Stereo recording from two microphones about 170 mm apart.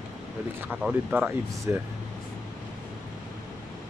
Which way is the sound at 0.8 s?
5° right (ahead or behind).